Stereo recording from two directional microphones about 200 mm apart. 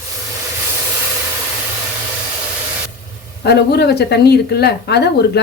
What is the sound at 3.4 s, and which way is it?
Speech, 55° left (ahead or behind).